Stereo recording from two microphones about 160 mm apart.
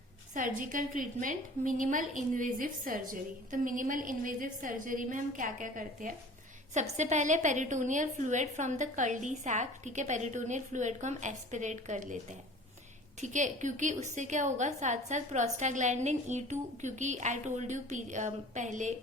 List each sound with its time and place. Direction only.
0.3 s a woman's voice: 55° right (ahead or behind)
13.1 s a woman's voice: 50° right (ahead or behind)